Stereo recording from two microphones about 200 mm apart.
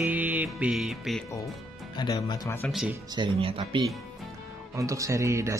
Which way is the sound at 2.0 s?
20° left (ahead or behind).